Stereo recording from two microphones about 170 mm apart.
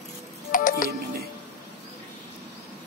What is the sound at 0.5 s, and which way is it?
Music, 55° left (ahead or behind).